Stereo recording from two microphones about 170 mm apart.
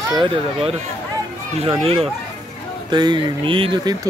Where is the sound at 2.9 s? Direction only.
25° right (ahead or behind).